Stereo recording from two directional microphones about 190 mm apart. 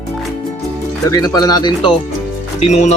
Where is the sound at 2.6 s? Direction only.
35° left (ahead or behind).